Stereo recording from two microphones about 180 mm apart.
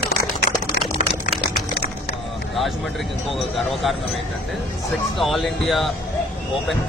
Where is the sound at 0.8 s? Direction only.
70° left (ahead or behind).